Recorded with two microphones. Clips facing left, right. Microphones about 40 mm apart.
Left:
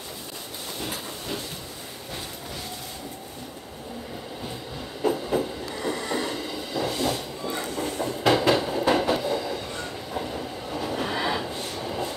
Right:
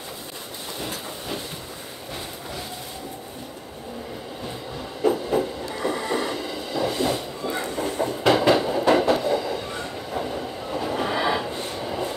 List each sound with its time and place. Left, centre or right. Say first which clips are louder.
5.0 s train: right 3 dB; centre
7.0 s a sound: right 3 dB; centre
7.6 s train: right 4 dB; right
8.3 s train: right 2 dB; centre